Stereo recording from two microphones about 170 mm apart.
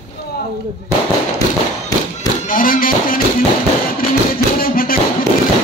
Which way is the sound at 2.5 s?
55° left (ahead or behind).